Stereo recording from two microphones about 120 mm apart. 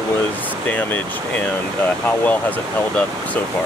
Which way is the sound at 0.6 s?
15° left (ahead or behind).